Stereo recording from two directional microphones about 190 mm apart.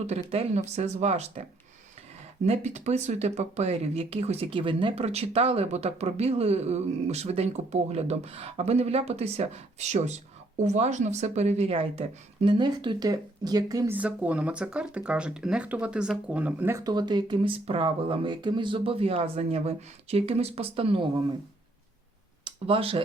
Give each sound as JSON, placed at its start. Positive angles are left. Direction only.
{"t": 0.1, "sound": "a woman's voice", "side_deg": -35}
{"t": 22.4, "sound": "speech", "side_deg": -30}